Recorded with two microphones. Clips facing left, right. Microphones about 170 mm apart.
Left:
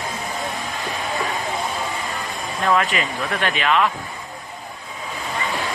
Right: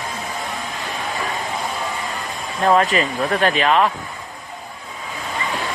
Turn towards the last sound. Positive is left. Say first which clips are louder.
# right 3 dB
turn(degrees=-35)  # may be behind; listen again after turning